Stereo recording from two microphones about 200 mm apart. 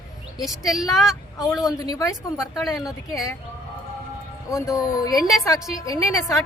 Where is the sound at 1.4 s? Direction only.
15° left (ahead or behind).